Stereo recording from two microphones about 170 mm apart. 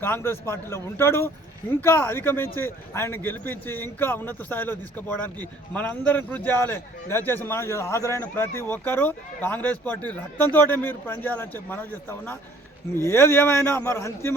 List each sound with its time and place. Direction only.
0.0 s a man's voice: 15° left (ahead or behind)